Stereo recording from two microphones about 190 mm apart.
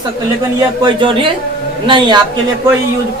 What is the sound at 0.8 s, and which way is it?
Speech, 25° right (ahead or behind).